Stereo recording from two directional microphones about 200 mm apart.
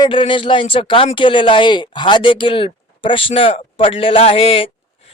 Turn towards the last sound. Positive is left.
turn(degrees=30)  # may be behind; listen again after turning